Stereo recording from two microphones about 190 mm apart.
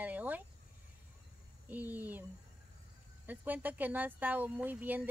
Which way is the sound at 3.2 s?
10° right (ahead or behind).